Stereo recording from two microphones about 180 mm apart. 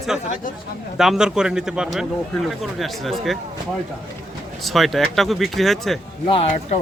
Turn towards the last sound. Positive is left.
turn(degrees=30)  # may be behind; listen again after turning